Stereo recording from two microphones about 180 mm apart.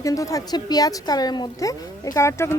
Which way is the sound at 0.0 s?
20° left (ahead or behind).